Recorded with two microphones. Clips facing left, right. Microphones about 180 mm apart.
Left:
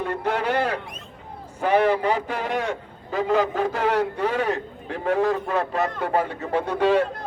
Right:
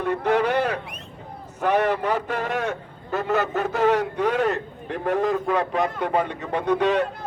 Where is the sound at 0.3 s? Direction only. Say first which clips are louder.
Right 2 dB; 10° left (ahead or behind).